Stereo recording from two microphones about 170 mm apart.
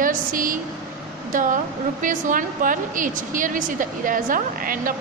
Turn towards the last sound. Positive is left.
turn(degrees=-55)  # may be behind; listen again after turning